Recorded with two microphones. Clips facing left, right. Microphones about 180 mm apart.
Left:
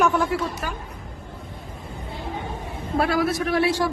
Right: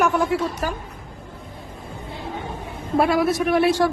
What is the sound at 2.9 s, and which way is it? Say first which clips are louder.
Speech: right 3 dB; 25° right (ahead or behind).